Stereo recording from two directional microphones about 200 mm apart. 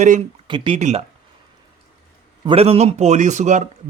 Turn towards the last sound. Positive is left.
turn(degrees=-35)  # may be behind; listen again after turning